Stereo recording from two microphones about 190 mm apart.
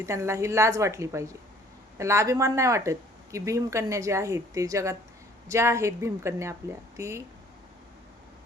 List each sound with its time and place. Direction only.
0.0 s speech: 15° right (ahead or behind)